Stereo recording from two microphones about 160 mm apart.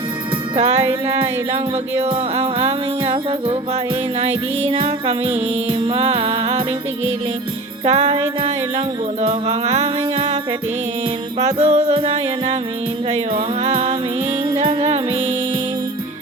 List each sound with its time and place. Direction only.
0.5 s music: 45° right (ahead or behind)
7.9 s music: 45° right (ahead or behind)
9.2 s music: 40° right (ahead or behind)
11.3 s music: 40° right (ahead or behind)